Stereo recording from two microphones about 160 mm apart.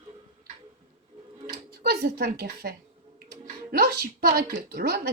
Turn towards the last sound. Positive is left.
turn(degrees=-70)  # may be behind; listen again after turning